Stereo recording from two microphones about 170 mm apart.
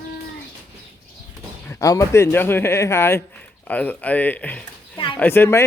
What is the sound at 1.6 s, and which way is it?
A man's voice, 20° left (ahead or behind).